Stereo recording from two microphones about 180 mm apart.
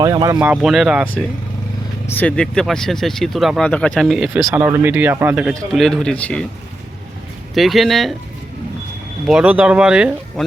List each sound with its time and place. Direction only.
0.0 s speech: 20° right (ahead or behind)
0.4 s speech: 5° right (ahead or behind)
2.0 s speech: 10° left (ahead or behind)
7.5 s speech: centre (ahead or behind)
9.2 s speech: 5° right (ahead or behind)